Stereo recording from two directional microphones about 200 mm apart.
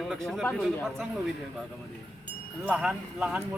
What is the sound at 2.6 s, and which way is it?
Speech, 5° right (ahead or behind).